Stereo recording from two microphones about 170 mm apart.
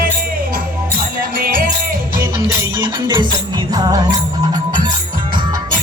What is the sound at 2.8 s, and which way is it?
Music, 25° right (ahead or behind).